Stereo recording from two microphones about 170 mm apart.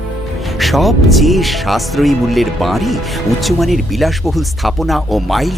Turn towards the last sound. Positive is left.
turn(degrees=0)  # may be behind; listen again after turning